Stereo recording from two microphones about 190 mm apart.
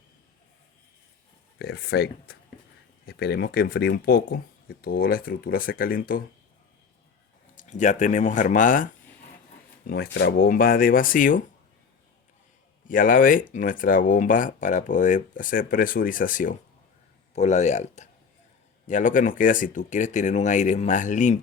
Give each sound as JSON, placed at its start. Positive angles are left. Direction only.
{"t": 1.5, "sound": "speech", "side_deg": 55}
{"t": 7.5, "sound": "speech", "side_deg": 40}
{"t": 12.9, "sound": "speech", "side_deg": 45}